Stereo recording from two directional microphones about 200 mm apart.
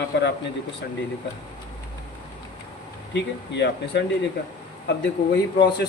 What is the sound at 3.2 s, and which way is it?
Speech, 60° left (ahead or behind).